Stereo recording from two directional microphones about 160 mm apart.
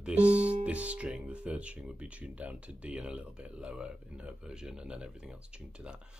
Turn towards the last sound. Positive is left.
turn(degrees=-5)  # may be behind; listen again after turning